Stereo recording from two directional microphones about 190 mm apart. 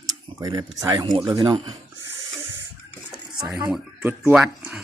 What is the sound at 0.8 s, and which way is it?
Speech, 20° right (ahead or behind).